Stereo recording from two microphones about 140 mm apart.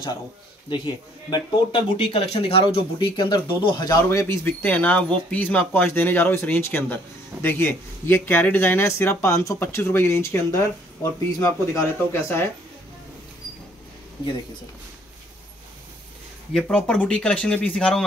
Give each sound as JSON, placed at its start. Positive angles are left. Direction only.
{"t": 1.3, "sound": "speech", "side_deg": 35}
{"t": 16.5, "sound": "speech", "side_deg": 5}